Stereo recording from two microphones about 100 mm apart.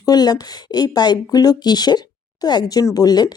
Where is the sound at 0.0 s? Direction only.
40° left (ahead or behind).